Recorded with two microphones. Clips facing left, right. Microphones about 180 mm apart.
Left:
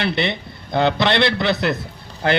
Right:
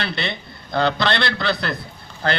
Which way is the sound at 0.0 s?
20° left (ahead or behind).